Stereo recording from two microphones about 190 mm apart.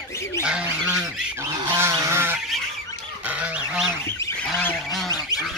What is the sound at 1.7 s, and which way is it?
Goose, 15° right (ahead or behind).